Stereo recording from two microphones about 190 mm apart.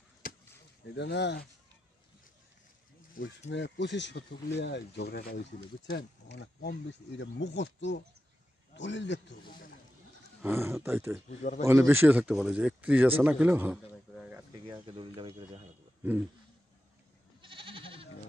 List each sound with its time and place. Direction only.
0.2 s chop: 50° left (ahead or behind)
0.9 s speech: 65° left (ahead or behind)
3.4 s a man's voice: 70° left (ahead or behind)
10.4 s a man's voice: 15° right (ahead or behind)
11.2 s a man's voice: 40° left (ahead or behind)
11.6 s a man's voice: 15° right (ahead or behind)
14.1 s a sound: 5° right (ahead or behind)
15.0 s speech: 25° right (ahead or behind)
17.4 s goat: 25° right (ahead or behind)